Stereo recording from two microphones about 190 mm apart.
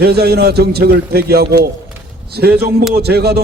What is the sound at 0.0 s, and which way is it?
A man's voice, 55° right (ahead or behind).